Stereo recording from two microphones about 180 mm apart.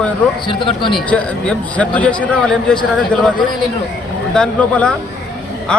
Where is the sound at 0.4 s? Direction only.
25° left (ahead or behind).